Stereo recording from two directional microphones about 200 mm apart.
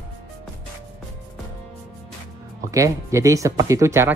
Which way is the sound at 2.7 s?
15° right (ahead or behind).